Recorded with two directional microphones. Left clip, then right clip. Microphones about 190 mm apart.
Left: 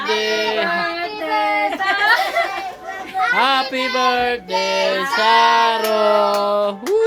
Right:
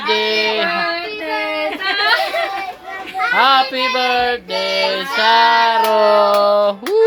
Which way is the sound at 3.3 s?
5° left (ahead or behind).